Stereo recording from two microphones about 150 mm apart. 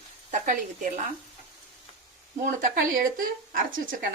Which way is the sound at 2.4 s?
65° right (ahead or behind).